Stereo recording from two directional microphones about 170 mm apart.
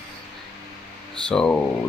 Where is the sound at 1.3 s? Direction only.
5° left (ahead or behind).